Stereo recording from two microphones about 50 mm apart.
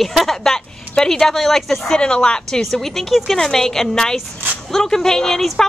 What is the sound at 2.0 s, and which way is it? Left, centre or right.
Speech, centre.